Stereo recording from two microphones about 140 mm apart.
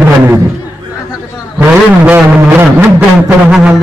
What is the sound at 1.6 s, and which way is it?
Music, 15° right (ahead or behind).